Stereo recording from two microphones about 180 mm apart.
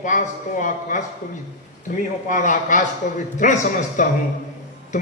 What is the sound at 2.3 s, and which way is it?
Speech, 45° left (ahead or behind).